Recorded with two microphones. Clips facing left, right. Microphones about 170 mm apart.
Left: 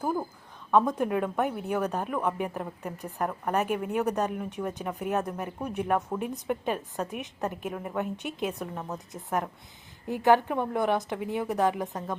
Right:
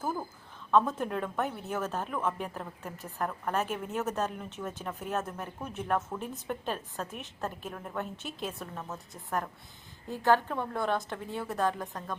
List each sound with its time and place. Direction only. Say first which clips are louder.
0.0 s a woman's voice: left 5 dB; 15° left (ahead or behind)